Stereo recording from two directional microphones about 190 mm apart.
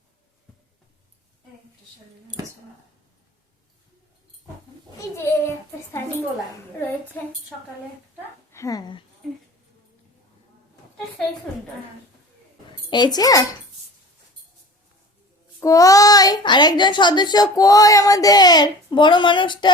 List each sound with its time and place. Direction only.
4.9 s a sound: 15° left (ahead or behind)
6.7 s a woman's voice: 10° left (ahead or behind)
8.5 s speech: 20° left (ahead or behind)
12.9 s a child's voice: 20° left (ahead or behind)
15.6 s a child's voice: 20° left (ahead or behind)